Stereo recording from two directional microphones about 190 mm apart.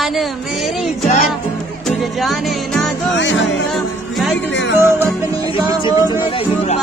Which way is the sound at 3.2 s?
75° left (ahead or behind).